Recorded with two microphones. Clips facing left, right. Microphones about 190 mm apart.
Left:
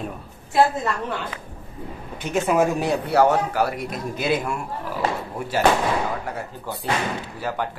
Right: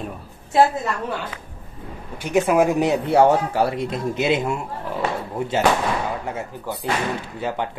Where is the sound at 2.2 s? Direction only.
10° right (ahead or behind).